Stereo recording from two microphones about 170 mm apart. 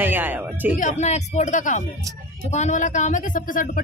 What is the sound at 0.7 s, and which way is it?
Speech, 45° left (ahead or behind).